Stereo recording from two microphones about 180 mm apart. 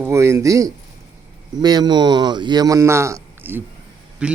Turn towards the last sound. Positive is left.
turn(degrees=-5)  # may be behind; listen again after turning